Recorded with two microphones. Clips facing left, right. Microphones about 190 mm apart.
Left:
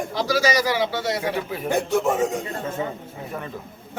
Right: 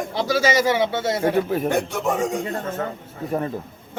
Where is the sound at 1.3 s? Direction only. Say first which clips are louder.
Right 6 dB; 45° right (ahead or behind).